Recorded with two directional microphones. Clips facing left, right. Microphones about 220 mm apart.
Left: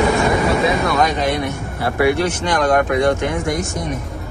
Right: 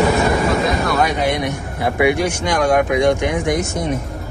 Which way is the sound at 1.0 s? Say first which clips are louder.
Even; 10° right (ahead or behind).